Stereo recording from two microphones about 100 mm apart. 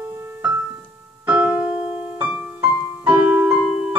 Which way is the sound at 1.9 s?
20° right (ahead or behind).